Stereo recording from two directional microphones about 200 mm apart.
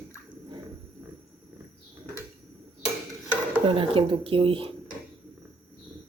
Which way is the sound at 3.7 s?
25° right (ahead or behind).